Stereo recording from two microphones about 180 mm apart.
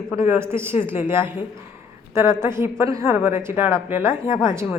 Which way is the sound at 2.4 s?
15° right (ahead or behind).